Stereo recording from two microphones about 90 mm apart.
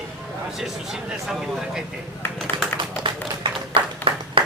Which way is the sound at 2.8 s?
65° right (ahead or behind).